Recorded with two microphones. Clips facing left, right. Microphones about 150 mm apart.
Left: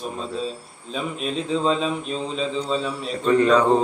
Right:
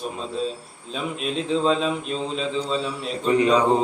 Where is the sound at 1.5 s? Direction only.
Centre (ahead or behind).